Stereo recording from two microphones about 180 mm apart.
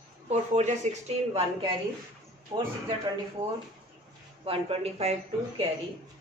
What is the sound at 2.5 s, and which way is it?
Speech, 25° right (ahead or behind).